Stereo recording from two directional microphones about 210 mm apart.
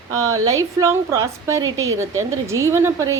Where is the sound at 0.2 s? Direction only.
90° right.